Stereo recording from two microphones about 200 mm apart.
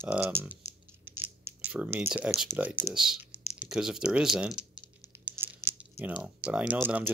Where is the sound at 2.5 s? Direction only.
10° right (ahead or behind).